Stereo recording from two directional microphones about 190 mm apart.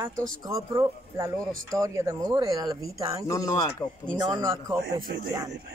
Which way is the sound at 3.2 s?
15° left (ahead or behind).